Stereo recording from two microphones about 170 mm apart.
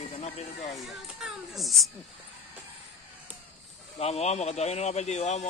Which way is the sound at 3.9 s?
40° left (ahead or behind).